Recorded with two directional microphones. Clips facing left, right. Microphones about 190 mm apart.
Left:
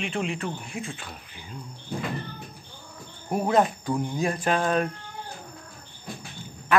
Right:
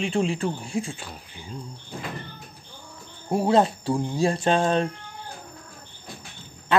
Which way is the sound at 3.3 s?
30° right (ahead or behind).